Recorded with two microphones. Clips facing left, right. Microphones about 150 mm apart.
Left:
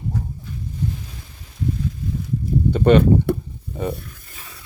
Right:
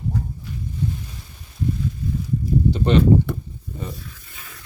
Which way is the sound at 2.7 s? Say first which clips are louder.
Left 4 dB; 55° left (ahead or behind).